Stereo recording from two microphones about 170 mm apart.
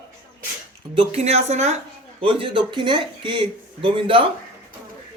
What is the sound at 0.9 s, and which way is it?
Speech, 40° right (ahead or behind).